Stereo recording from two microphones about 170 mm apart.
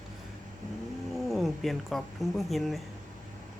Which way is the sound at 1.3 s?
Centre (ahead or behind).